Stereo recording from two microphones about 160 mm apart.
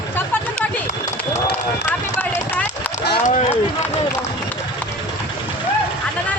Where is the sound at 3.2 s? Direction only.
50° left (ahead or behind).